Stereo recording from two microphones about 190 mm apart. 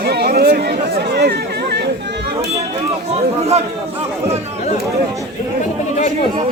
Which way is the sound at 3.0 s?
35° right (ahead or behind).